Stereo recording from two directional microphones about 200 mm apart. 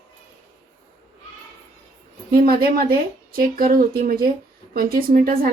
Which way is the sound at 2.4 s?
50° right (ahead or behind).